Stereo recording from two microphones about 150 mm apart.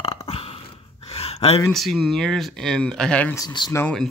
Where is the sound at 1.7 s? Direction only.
Centre (ahead or behind).